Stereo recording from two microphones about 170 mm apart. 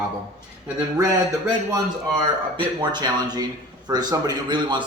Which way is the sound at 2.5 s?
25° right (ahead or behind).